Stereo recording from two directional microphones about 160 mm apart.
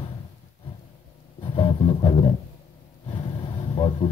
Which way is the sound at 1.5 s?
35° left (ahead or behind).